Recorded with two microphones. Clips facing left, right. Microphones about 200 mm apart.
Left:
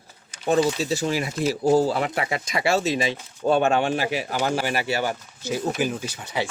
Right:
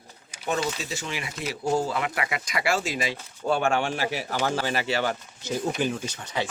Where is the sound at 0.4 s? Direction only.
35° left (ahead or behind).